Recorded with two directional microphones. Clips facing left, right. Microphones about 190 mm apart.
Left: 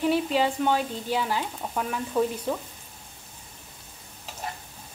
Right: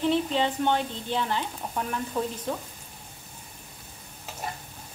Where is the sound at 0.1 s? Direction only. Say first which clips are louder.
Left 1 dB; 5° left (ahead or behind).